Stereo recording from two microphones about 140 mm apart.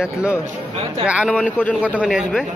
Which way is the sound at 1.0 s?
10° right (ahead or behind).